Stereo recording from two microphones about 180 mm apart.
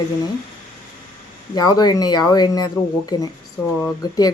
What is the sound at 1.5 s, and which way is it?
Speech, 20° left (ahead or behind).